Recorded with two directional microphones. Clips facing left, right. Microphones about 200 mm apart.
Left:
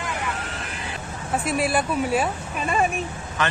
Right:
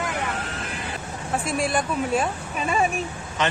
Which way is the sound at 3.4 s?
20° right (ahead or behind).